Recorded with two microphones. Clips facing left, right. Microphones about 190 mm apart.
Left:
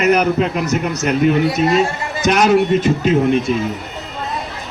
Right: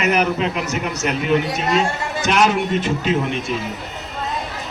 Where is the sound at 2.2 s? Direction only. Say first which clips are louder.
Left 5 dB; 40° left (ahead or behind).